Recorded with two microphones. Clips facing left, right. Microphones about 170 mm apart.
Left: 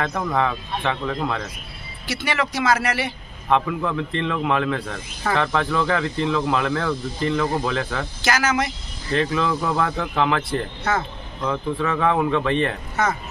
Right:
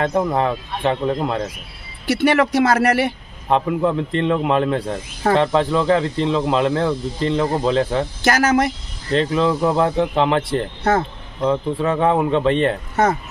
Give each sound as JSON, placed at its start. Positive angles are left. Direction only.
{"t": 0.0, "sound": "speech", "side_deg": -30}
{"t": 2.0, "sound": "speech", "side_deg": -55}
{"t": 3.4, "sound": "a man's voice", "side_deg": -35}
{"t": 8.2, "sound": "speech", "side_deg": -55}
{"t": 9.1, "sound": "speech", "side_deg": -25}